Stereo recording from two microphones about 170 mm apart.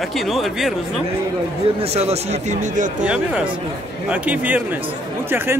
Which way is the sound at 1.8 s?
35° right (ahead or behind).